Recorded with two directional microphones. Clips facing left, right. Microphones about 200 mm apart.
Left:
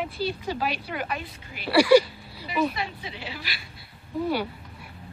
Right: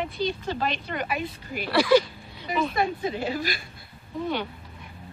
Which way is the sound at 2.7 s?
50° right (ahead or behind).